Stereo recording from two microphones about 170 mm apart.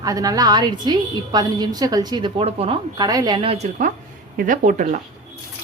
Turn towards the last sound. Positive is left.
turn(degrees=-50)  # may be behind; listen again after turning